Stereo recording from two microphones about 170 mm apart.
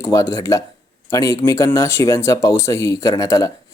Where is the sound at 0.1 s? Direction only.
20° left (ahead or behind).